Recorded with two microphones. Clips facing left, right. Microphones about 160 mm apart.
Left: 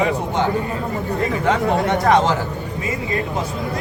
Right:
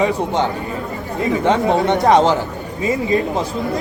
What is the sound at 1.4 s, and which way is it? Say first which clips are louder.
Speech: right 3 dB; 25° right (ahead or behind).